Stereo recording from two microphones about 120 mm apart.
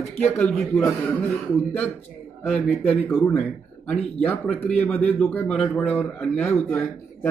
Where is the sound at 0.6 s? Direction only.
5° left (ahead or behind).